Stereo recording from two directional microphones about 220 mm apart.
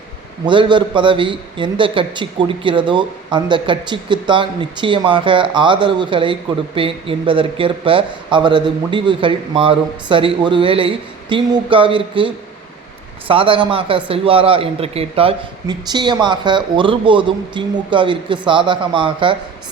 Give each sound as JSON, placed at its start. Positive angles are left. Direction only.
{"t": 0.4, "sound": "a man's voice", "side_deg": -20}